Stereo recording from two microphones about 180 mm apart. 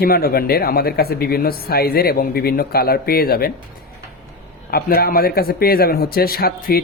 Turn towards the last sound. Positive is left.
turn(degrees=60)  # may be behind; listen again after turning